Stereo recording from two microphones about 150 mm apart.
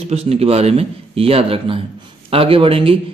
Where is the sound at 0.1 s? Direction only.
45° right (ahead or behind).